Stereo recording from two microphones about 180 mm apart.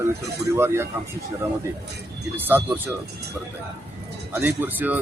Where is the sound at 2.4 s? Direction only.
10° right (ahead or behind).